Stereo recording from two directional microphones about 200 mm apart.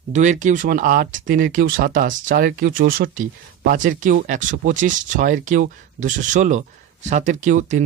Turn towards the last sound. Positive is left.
turn(degrees=-40)  # may be behind; listen again after turning